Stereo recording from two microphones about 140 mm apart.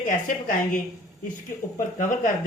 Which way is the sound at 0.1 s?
75° left (ahead or behind).